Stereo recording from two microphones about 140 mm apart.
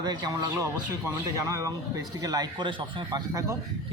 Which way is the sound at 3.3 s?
20° right (ahead or behind).